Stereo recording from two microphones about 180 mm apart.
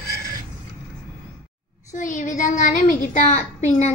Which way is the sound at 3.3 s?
40° left (ahead or behind).